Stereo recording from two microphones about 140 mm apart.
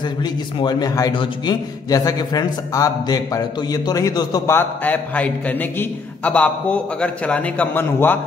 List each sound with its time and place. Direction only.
0.2 s a man's voice: 30° left (ahead or behind)
4.6 s a man's voice: 10° left (ahead or behind)